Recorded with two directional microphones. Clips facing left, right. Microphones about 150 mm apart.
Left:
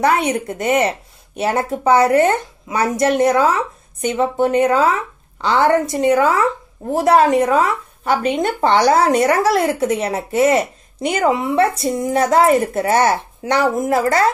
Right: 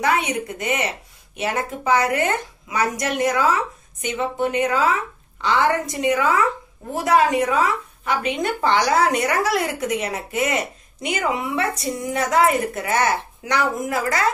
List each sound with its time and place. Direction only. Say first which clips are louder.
0.0 s a woman's voice: left 5 dB; 40° left (ahead or behind)